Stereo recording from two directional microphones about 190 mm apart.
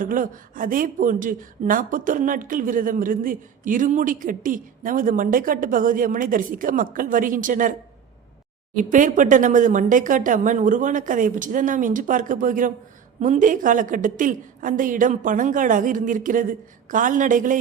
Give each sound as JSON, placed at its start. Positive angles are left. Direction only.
{"t": 0.0, "sound": "a woman's voice", "side_deg": -45}